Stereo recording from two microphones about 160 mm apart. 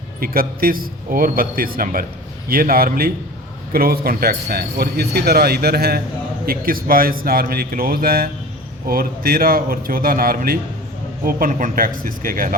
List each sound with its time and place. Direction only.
0.2 s a man's voice: 65° right (ahead or behind)